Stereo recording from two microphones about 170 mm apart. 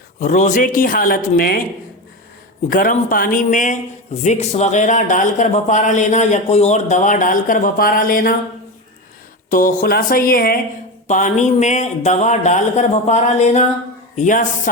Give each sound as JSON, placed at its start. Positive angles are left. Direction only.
{"t": 0.2, "sound": "a man's voice", "side_deg": 45}
{"t": 2.6, "sound": "a man's voice", "side_deg": 50}
{"t": 9.5, "sound": "speech", "side_deg": 50}
{"t": 11.1, "sound": "a man's voice", "side_deg": 45}